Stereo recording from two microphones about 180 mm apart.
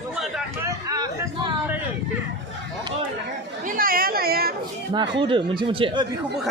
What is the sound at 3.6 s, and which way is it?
Chatter, 50° right (ahead or behind).